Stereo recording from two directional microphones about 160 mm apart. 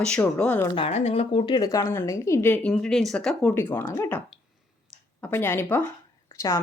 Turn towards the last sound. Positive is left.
turn(degrees=20)  # may be behind; listen again after turning